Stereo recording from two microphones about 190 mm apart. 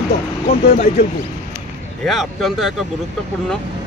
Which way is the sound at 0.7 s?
35° left (ahead or behind).